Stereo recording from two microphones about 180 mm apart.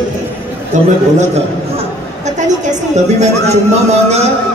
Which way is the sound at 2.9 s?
40° right (ahead or behind).